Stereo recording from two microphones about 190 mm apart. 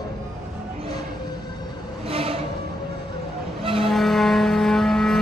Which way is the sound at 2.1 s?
30° right (ahead or behind).